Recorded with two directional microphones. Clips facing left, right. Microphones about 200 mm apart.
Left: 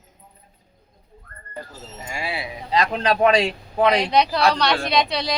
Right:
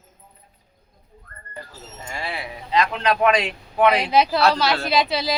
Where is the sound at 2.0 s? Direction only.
10° left (ahead or behind).